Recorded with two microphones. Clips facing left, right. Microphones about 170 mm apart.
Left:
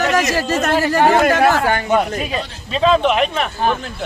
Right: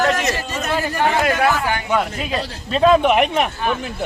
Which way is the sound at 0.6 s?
75° left (ahead or behind).